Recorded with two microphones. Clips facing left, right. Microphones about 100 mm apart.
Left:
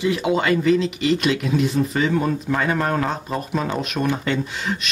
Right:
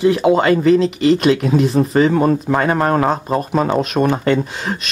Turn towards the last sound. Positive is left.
turn(degrees=-45)  # may be behind; listen again after turning